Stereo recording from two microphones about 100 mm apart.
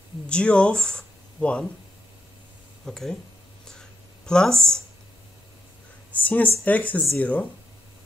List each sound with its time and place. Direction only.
0.3 s speech: 10° left (ahead or behind)
2.8 s speech: 5° left (ahead or behind)
4.3 s speech: 5° left (ahead or behind)
6.1 s a sound: 15° left (ahead or behind)
6.6 s speech: 15° left (ahead or behind)